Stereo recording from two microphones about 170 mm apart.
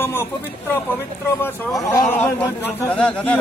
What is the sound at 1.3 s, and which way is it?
Speech, 15° left (ahead or behind).